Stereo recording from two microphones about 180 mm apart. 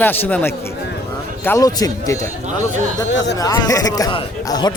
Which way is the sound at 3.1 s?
80° left.